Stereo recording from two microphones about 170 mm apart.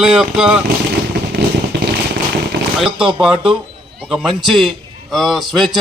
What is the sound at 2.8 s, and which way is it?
A man's voice, 5° right (ahead or behind).